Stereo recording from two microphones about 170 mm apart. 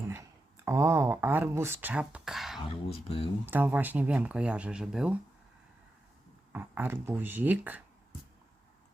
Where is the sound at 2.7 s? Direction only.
35° left (ahead or behind).